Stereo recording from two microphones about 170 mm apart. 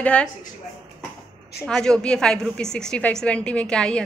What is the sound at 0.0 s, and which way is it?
Speech, 5° left (ahead or behind).